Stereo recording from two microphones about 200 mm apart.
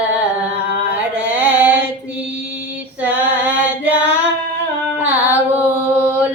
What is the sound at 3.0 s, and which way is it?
Female singing, 5° right (ahead or behind).